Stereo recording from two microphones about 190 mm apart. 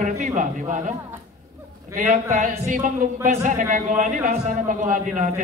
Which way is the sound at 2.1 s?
35° right (ahead or behind).